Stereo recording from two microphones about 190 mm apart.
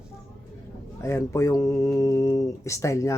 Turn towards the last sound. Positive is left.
turn(degrees=15)  # may be behind; listen again after turning